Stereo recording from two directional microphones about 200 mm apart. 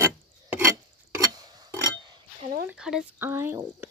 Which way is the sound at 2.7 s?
5° right (ahead or behind).